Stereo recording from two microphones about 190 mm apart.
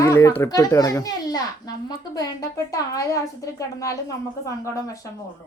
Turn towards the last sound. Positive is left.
turn(degrees=15)  # may be behind; listen again after turning